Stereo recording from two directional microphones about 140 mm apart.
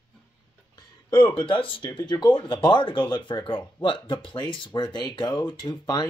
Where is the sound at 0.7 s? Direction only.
30° left (ahead or behind).